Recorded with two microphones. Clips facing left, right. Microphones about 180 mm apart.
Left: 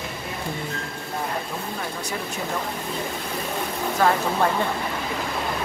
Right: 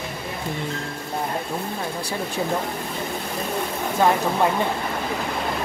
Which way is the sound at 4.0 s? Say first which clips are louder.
Right 2 dB; 15° right (ahead or behind).